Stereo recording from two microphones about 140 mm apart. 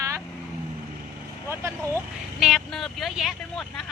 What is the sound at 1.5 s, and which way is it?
Speech, 20° right (ahead or behind).